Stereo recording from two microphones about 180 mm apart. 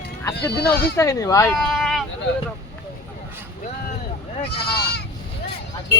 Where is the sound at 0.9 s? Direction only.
15° left (ahead or behind).